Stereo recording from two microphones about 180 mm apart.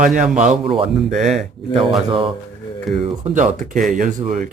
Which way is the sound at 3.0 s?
45° right (ahead or behind).